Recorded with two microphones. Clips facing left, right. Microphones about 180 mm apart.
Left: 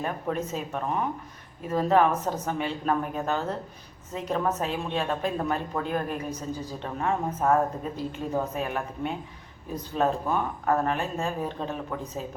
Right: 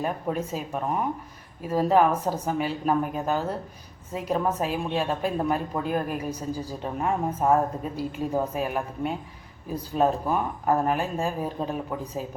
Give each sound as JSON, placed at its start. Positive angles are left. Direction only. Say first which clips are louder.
{"t": 0.0, "sound": "a woman's voice", "louder": "right 2 dB", "side_deg": -10}